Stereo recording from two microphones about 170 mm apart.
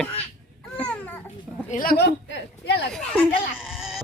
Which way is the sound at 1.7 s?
55° left (ahead or behind).